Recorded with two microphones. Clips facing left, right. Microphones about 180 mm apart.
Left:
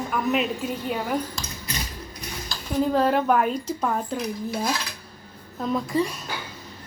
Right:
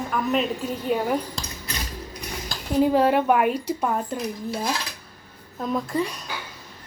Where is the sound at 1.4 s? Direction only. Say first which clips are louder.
Right 1 dB; 30° right (ahead or behind).